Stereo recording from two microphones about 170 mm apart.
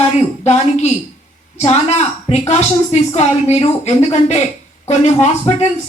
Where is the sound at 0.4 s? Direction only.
40° left (ahead or behind).